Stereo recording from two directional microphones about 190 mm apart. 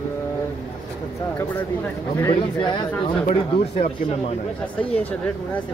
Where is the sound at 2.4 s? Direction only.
25° left (ahead or behind).